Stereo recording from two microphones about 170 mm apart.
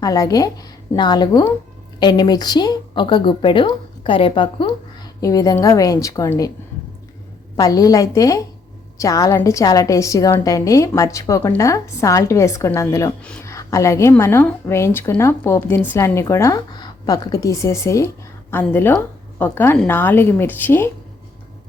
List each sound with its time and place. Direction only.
0.0 s a woman's voice: 20° left (ahead or behind)
7.5 s a woman's voice: 20° left (ahead or behind)